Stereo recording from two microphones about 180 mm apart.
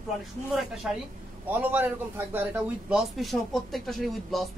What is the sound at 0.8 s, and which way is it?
A man's voice, 5° right (ahead or behind).